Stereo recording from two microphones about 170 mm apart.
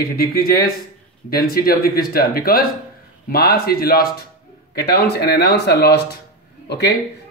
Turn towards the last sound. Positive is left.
turn(degrees=80)